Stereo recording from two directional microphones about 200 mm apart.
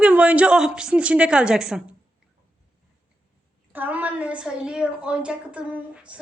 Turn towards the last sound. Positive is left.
turn(degrees=-5)  # may be behind; listen again after turning